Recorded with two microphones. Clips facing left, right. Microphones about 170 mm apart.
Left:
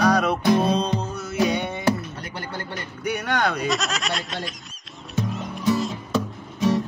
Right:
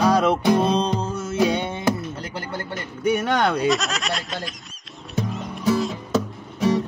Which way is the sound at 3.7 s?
Centre (ahead or behind).